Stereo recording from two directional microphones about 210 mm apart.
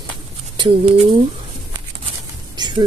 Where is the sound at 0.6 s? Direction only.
25° right (ahead or behind).